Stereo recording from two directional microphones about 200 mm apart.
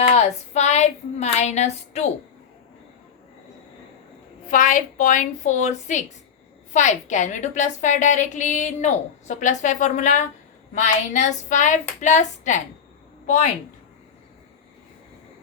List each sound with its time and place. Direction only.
0.1 s a woman's voice: 35° left (ahead or behind)
4.4 s a woman's voice: 40° left (ahead or behind)